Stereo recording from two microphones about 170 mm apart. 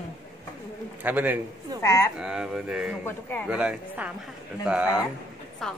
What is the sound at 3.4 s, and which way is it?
Speech, 5° right (ahead or behind).